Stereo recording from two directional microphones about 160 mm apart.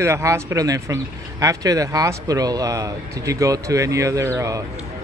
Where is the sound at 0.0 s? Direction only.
20° right (ahead or behind).